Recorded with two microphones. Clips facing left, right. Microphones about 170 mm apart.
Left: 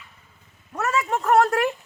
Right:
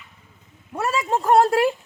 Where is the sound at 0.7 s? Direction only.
30° right (ahead or behind).